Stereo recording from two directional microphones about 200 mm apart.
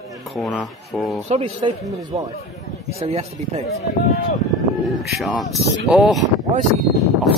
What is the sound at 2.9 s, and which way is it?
Speech, 30° right (ahead or behind).